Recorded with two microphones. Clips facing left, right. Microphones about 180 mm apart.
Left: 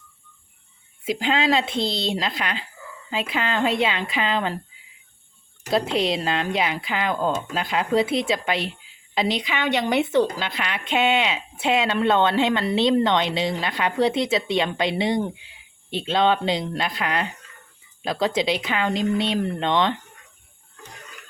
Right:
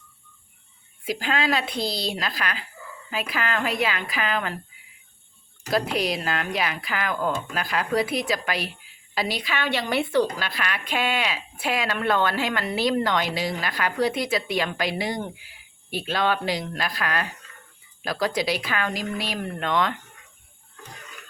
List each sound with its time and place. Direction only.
1.0 s speech: 25° left (ahead or behind)
5.7 s speech: 25° left (ahead or behind)